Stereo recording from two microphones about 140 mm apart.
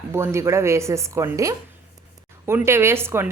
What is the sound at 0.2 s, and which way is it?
A woman's voice, 20° right (ahead or behind).